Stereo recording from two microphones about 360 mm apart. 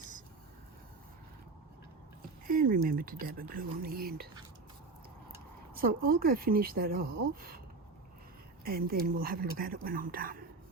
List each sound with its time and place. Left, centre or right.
2.5 s speech: right
5.7 s speech: right
8.6 s speech: right